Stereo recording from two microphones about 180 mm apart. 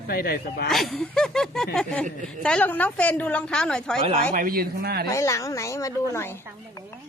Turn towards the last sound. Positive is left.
turn(degrees=15)  # may be behind; listen again after turning